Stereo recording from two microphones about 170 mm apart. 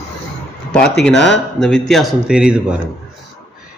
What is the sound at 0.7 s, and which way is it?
Speech, 5° left (ahead or behind).